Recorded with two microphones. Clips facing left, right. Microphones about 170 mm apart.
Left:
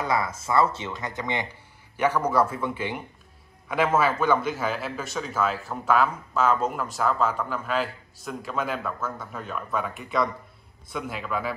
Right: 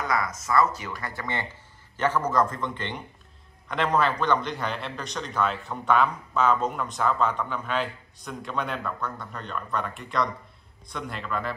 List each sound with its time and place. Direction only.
0.0 s a man's voice: 30° left (ahead or behind); by 11.5 s 5° left (ahead or behind)